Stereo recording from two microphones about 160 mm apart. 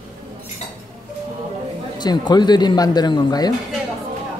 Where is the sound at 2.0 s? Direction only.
25° left (ahead or behind).